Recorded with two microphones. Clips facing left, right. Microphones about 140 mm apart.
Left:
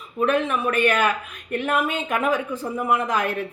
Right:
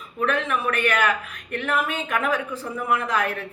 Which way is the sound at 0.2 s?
25° left (ahead or behind).